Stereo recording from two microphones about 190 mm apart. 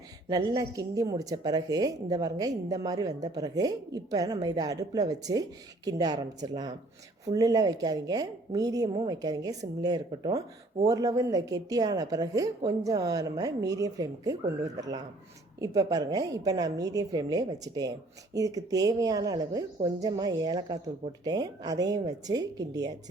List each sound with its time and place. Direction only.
0.3 s a woman's voice: 20° right (ahead or behind)
15.6 s a woman's voice: 20° right (ahead or behind)